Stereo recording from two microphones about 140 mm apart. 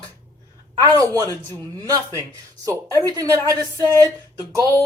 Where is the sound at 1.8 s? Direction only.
25° right (ahead or behind).